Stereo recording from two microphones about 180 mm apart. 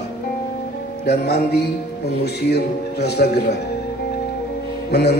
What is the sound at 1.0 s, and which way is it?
Speech, 65° left (ahead or behind).